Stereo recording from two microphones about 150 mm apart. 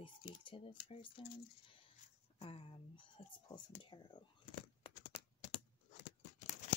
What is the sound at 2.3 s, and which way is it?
Speech, 35° left (ahead or behind).